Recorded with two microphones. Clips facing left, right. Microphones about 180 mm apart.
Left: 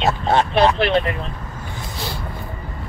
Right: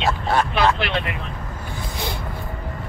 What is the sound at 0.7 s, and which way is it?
Speech, 35° left (ahead or behind).